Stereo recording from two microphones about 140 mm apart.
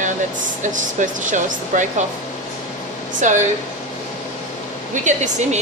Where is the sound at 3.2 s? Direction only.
60° right (ahead or behind).